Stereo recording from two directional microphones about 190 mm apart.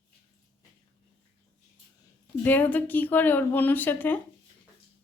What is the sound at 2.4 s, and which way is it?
Speech, 10° left (ahead or behind).